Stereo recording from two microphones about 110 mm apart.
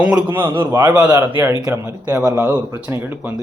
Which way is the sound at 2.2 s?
30° right (ahead or behind).